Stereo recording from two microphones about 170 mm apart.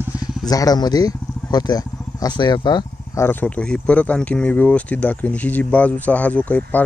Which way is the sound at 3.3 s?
10° left (ahead or behind).